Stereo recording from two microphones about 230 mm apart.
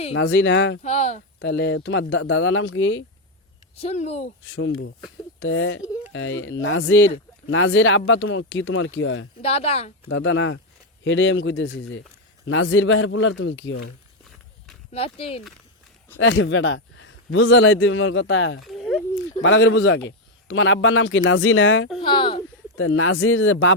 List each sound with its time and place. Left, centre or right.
0.1 s speech: left
0.8 s speech: left
1.4 s a man's voice: left
3.8 s speech: left
4.4 s a man's voice: left
9.4 s speech: left
10.1 s a man's voice: left
14.9 s speech: left
16.1 s a man's voice: left
18.6 s a sound: centre
19.4 s a man's voice: left
22.0 s speech: left
22.8 s a man's voice: left